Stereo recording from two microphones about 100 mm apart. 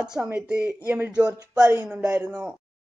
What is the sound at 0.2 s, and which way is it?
Speech, 15° right (ahead or behind).